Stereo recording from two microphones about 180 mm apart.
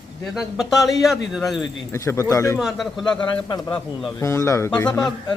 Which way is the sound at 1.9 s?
15° left (ahead or behind).